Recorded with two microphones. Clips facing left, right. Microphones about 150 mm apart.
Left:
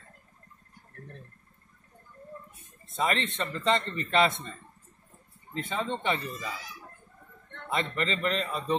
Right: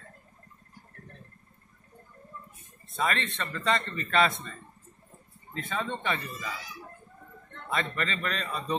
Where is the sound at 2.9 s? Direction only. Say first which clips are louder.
Left 1 dB; 25° left (ahead or behind).